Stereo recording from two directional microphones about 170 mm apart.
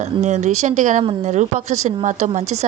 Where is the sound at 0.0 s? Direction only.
45° right (ahead or behind).